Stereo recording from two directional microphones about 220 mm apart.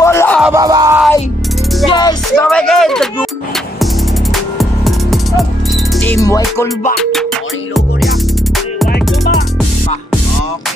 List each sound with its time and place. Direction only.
0.0 s music: 10° left (ahead or behind)
0.4 s music: 15° right (ahead or behind)
1.9 s music: 15° left (ahead or behind)
2.5 s a sound: centre (ahead or behind)
3.8 s music: centre (ahead or behind)
6.0 s music: 15° left (ahead or behind)
7.0 s music: centre (ahead or behind)